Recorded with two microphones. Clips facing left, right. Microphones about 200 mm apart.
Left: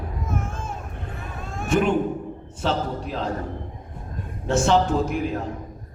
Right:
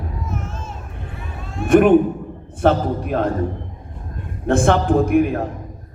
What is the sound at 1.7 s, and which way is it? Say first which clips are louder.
A man's voice: right 9 dB; 55° right (ahead or behind).